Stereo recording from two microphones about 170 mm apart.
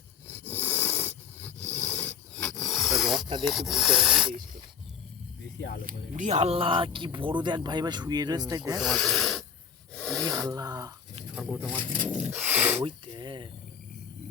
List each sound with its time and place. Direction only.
0.3 s a sound: 10° left (ahead or behind)
3.4 s speech: centre (ahead or behind)
5.5 s speech: 75° left (ahead or behind)
5.8 s speech: 45° right (ahead or behind); by 8.8 s 20° right (ahead or behind)
8.8 s speech: centre (ahead or behind)
9.9 s rub: 5° left (ahead or behind)
10.5 s speech: 20° right (ahead or behind)
11.3 s speech: 5° right (ahead or behind)
12.8 s speech: 25° right (ahead or behind)